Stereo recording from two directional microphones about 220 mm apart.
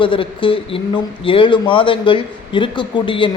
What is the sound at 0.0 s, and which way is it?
Speech, 25° left (ahead or behind).